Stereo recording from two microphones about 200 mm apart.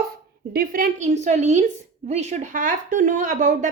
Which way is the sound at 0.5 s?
40° right (ahead or behind).